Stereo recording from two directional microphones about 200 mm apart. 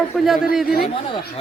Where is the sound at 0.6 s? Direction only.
50° left (ahead or behind).